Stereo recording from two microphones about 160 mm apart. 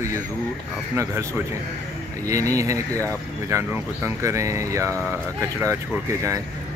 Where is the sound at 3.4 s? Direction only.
15° right (ahead or behind).